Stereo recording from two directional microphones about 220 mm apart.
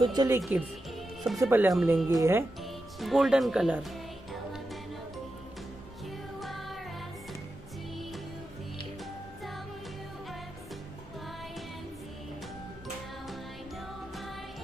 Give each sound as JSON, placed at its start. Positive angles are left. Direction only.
{"t": 0.0, "sound": "speech", "side_deg": -20}
{"t": 0.4, "sound": "speech", "side_deg": -5}
{"t": 2.0, "sound": "speech", "side_deg": -15}
{"t": 2.6, "sound": "speech", "side_deg": 0}
{"t": 6.4, "sound": "music", "side_deg": 0}